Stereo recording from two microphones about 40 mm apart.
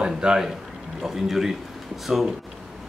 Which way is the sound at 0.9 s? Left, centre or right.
Centre.